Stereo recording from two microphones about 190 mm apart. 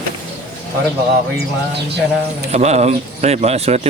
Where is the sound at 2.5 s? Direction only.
35° right (ahead or behind).